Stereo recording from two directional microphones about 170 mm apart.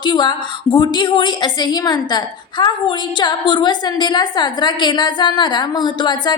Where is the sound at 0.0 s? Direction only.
25° left (ahead or behind).